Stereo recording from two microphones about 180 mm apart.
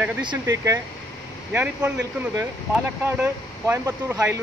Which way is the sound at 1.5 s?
5° right (ahead or behind).